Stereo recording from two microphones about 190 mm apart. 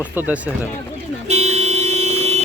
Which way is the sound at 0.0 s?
10° right (ahead or behind).